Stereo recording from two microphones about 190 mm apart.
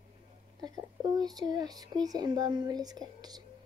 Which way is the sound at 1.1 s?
20° right (ahead or behind).